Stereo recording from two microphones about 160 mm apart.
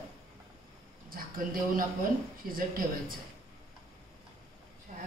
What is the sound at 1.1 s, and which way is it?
Speech, 65° right (ahead or behind).